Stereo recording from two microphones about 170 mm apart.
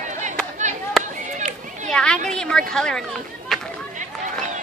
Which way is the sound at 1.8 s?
5° left (ahead or behind).